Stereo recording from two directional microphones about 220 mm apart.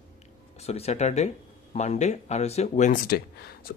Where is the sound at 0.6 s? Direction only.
30° left (ahead or behind).